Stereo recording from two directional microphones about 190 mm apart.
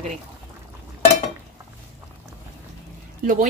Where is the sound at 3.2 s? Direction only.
45° right (ahead or behind).